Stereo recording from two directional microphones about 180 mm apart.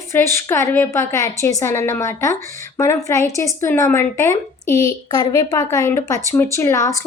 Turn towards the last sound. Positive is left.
turn(degrees=15)  # may be behind; listen again after turning